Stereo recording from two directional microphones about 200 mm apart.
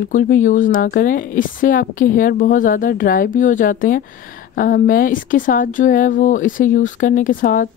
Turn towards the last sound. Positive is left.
turn(degrees=40)  # may be behind; listen again after turning